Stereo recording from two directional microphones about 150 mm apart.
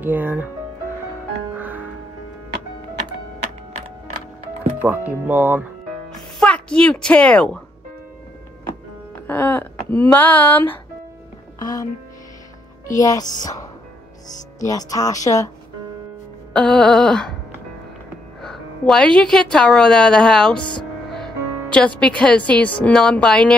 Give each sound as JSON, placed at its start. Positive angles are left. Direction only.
{"t": 0.0, "sound": "speech", "side_deg": -10}
{"t": 1.6, "sound": "music", "side_deg": -10}
{"t": 4.8, "sound": "speech", "side_deg": -10}
{"t": 6.0, "sound": "speech", "side_deg": 5}
{"t": 9.3, "sound": "a woman's voice", "side_deg": 15}
{"t": 12.9, "sound": "a woman's voice", "side_deg": 25}
{"t": 16.5, "sound": "speech", "side_deg": 5}
{"t": 18.4, "sound": "speech", "side_deg": 5}
{"t": 21.7, "sound": "a woman's voice", "side_deg": 10}